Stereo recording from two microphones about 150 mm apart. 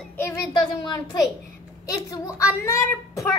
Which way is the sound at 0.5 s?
30° left (ahead or behind).